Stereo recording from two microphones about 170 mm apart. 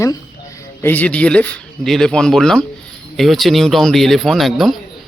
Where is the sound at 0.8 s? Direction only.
10° left (ahead or behind).